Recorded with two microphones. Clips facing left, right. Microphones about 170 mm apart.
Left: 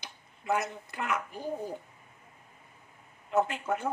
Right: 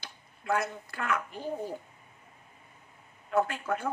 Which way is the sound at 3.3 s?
20° left (ahead or behind).